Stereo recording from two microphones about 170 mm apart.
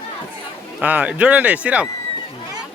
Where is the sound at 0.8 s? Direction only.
10° right (ahead or behind).